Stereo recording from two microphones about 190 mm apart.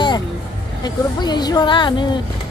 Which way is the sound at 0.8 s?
20° left (ahead or behind).